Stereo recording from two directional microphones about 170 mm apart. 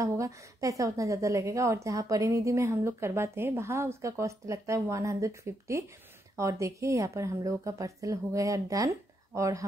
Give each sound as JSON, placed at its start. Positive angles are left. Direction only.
{"t": 0.0, "sound": "a woman's voice", "side_deg": -20}